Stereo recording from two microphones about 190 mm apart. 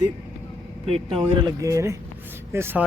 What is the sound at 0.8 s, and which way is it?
Speech, 30° right (ahead or behind).